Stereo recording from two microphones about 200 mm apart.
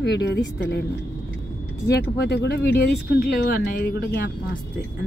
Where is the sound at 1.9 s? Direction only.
55° left (ahead or behind).